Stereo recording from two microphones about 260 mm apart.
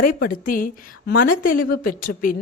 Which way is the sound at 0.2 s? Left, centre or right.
Left.